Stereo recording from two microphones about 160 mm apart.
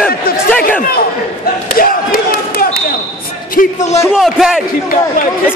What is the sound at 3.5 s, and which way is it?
Speech, 45° left (ahead or behind).